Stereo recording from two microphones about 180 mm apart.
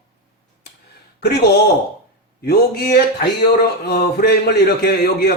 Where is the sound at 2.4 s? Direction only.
60° left (ahead or behind).